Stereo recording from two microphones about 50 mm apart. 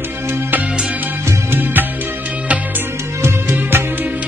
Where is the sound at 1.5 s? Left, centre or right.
Right.